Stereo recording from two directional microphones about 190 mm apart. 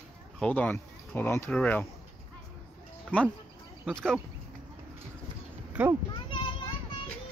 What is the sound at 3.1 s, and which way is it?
Speech, 10° left (ahead or behind).